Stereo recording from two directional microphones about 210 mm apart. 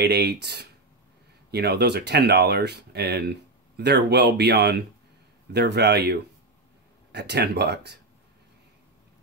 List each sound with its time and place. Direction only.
0.0 s speech: 50° right (ahead or behind)